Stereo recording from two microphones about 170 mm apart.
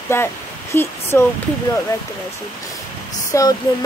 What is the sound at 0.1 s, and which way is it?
Speech, 15° left (ahead or behind).